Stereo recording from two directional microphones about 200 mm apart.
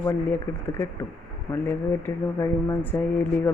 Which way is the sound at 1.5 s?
10° left (ahead or behind).